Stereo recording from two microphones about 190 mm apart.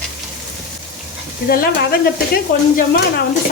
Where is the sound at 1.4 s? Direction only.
50° left (ahead or behind).